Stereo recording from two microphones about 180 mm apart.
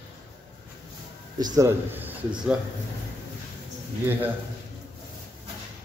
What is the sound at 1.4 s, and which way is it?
Speech, 20° right (ahead or behind).